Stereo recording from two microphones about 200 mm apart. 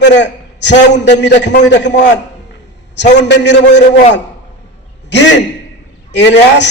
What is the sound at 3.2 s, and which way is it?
Speech, 60° left (ahead or behind).